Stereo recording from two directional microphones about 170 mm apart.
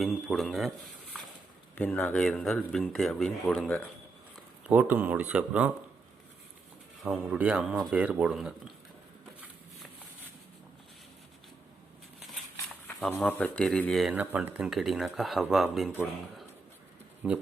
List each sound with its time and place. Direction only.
0.0 s speech: centre (ahead or behind)
1.7 s speech: 10° left (ahead or behind)
4.6 s speech: 10° right (ahead or behind)
7.0 s speech: 5° right (ahead or behind)
13.2 s speech: 5° left (ahead or behind)
17.2 s speech: 5° right (ahead or behind)